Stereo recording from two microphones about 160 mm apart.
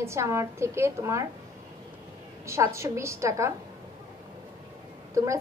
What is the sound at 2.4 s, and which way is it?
A woman's voice, 15° right (ahead or behind).